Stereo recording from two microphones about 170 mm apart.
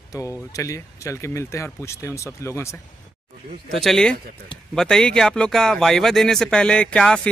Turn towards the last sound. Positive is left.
turn(degrees=5)  # may be behind; listen again after turning